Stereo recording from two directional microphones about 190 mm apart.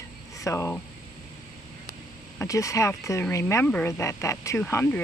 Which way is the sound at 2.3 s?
15° left (ahead or behind).